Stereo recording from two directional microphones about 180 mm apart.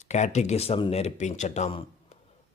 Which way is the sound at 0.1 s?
40° left (ahead or behind).